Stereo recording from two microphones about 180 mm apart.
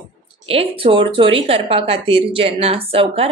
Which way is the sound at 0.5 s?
30° right (ahead or behind).